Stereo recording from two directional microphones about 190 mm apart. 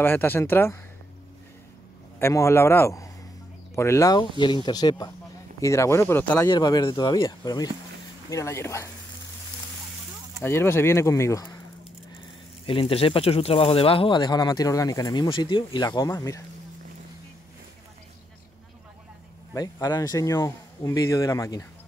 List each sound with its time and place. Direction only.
0.0 s speech: 10° left (ahead or behind)
2.1 s speech: 15° left (ahead or behind)
10.4 s speech: 10° left (ahead or behind)
12.6 s speech: 30° left (ahead or behind)
19.5 s speech: 20° left (ahead or behind)